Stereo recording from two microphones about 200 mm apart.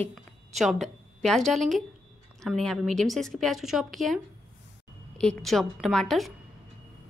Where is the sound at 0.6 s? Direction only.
Centre (ahead or behind).